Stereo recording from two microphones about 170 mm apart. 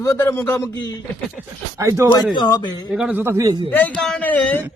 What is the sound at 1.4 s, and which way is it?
Speech, 5° right (ahead or behind).